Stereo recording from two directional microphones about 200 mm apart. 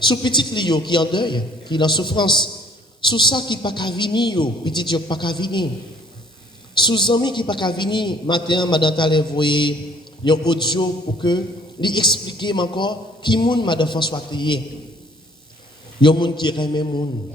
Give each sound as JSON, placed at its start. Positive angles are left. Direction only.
{"t": 0.0, "sound": "a man's voice", "side_deg": 25}
{"t": 6.7, "sound": "a man's voice", "side_deg": 25}
{"t": 16.0, "sound": "a man's voice", "side_deg": 25}